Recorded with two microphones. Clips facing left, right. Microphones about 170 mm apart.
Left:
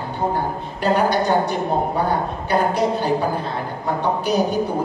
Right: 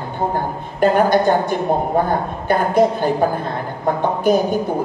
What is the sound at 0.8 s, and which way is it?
A man's voice, 50° right (ahead or behind).